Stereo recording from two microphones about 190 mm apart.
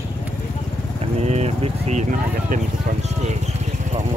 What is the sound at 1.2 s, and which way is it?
Speech, 35° right (ahead or behind).